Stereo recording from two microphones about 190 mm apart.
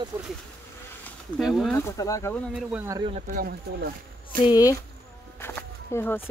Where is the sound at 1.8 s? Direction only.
15° left (ahead or behind).